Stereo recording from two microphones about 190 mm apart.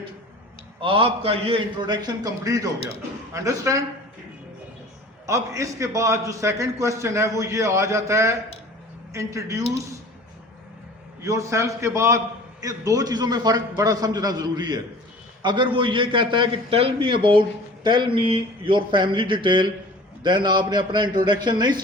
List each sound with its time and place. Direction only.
0.8 s a man's voice: 30° right (ahead or behind)
5.2 s a man's voice: 15° right (ahead or behind)
11.2 s a man's voice: 15° right (ahead or behind)